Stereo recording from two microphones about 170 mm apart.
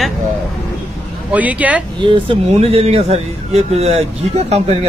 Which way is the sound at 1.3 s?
10° right (ahead or behind).